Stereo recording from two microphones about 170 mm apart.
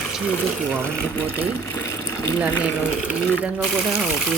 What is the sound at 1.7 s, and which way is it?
Speech, 15° left (ahead or behind).